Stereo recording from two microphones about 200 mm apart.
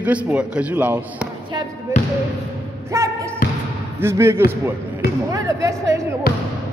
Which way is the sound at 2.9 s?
15° right (ahead or behind).